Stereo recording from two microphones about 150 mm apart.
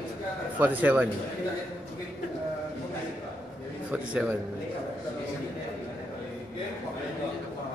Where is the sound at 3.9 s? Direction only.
10° right (ahead or behind).